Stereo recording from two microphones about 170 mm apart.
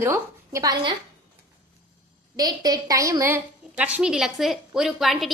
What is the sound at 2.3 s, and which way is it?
A woman's voice, 20° right (ahead or behind).